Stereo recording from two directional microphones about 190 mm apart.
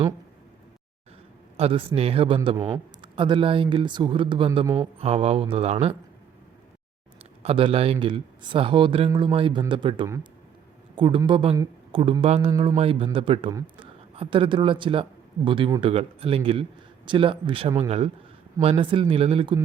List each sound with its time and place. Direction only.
1.5 s a man's voice: 30° right (ahead or behind)
7.4 s a man's voice: 30° right (ahead or behind)
13.5 s speech: 20° right (ahead or behind)
14.2 s a man's voice: 30° right (ahead or behind)